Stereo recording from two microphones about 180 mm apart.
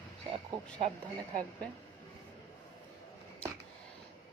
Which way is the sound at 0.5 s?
25° right (ahead or behind).